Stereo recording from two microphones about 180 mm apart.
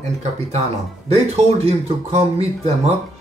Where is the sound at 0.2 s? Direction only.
40° right (ahead or behind).